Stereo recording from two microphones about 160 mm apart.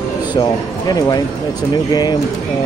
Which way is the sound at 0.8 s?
25° left (ahead or behind).